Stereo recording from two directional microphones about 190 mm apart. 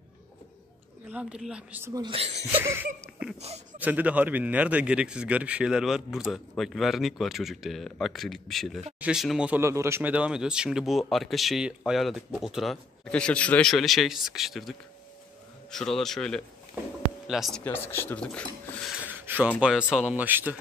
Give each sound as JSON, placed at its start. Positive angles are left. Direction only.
{"t": 1.1, "sound": "speech", "side_deg": -5}
{"t": 2.0, "sound": "speech", "side_deg": -30}
{"t": 2.6, "sound": "a sound", "side_deg": -10}
{"t": 3.3, "sound": "speech", "side_deg": -35}
{"t": 3.7, "sound": "speech", "side_deg": -10}
{"t": 19.0, "sound": "a sound", "side_deg": -10}
{"t": 19.6, "sound": "speech", "side_deg": -5}